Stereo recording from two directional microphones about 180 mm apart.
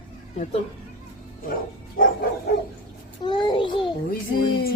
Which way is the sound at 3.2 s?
25° left (ahead or behind).